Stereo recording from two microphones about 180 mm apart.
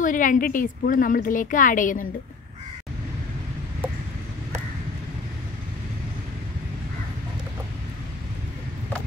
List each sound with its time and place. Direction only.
0.0 s a woman's voice: 45° left (ahead or behind)